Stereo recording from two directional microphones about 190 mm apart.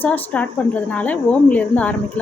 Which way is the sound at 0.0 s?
10° left (ahead or behind).